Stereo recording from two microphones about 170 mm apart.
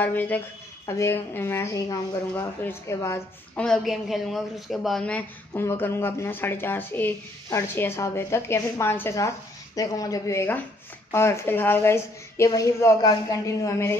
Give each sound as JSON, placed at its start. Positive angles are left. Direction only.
{"t": 0.0, "sound": "speech", "side_deg": 10}
{"t": 3.5, "sound": "speech", "side_deg": 5}